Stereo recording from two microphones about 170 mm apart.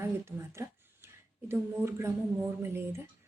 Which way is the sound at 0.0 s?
15° right (ahead or behind).